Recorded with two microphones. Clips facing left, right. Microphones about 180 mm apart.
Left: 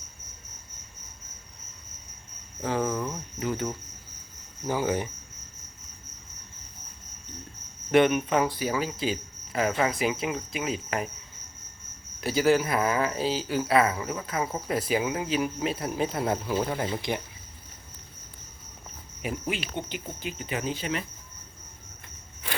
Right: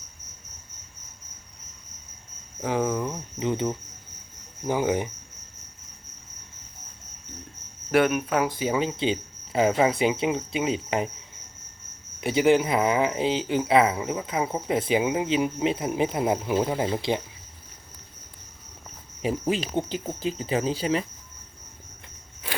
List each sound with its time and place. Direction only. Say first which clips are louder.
2.6 s cricket: right 2 dB; 15° right (ahead or behind)
7.9 s speech: left 1 dB; 5° right (ahead or behind)
8.4 s speech: right 3 dB; 20° right (ahead or behind)
12.2 s speech: right 3 dB; 20° right (ahead or behind)
19.2 s cricket: right 6 dB; 35° right (ahead or behind)